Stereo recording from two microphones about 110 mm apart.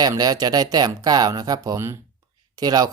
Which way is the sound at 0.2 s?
35° right (ahead or behind).